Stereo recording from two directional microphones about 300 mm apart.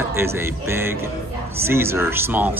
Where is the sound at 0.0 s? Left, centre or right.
Centre.